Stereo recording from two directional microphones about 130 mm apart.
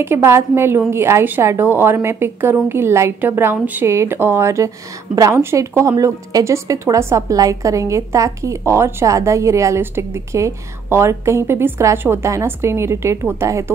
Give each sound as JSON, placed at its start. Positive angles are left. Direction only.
{"t": 0.0, "sound": "speech", "side_deg": -20}